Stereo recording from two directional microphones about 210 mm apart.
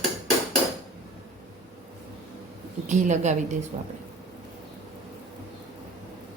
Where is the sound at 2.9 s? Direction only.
35° right (ahead or behind).